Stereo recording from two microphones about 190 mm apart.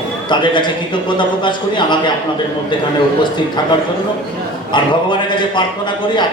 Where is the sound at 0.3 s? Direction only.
25° left (ahead or behind).